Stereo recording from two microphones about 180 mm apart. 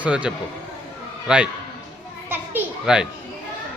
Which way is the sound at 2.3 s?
10° right (ahead or behind).